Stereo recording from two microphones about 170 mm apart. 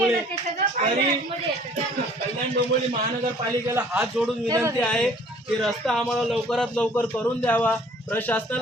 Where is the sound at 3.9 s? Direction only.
5° right (ahead or behind).